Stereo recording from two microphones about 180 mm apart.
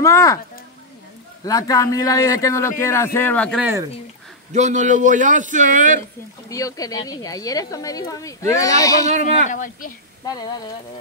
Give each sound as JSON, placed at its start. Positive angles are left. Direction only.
{"t": 0.0, "sound": "a man's voice", "side_deg": 20}
{"t": 1.4, "sound": "a man's voice", "side_deg": 20}
{"t": 4.5, "sound": "a man's voice", "side_deg": -40}
{"t": 6.5, "sound": "speech", "side_deg": 20}
{"t": 9.5, "sound": "speech", "side_deg": 50}
{"t": 10.2, "sound": "speech", "side_deg": 20}